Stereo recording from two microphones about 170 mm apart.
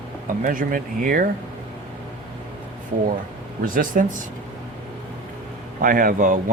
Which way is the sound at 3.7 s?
50° right (ahead or behind).